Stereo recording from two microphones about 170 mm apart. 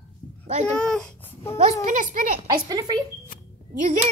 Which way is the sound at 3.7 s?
50° right (ahead or behind).